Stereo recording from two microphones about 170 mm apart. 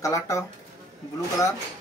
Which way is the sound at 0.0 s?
15° left (ahead or behind).